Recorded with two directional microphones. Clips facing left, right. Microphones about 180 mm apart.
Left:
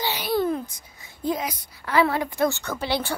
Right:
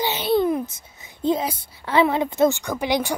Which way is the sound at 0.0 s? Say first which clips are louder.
Right 4 dB; 20° right (ahead or behind).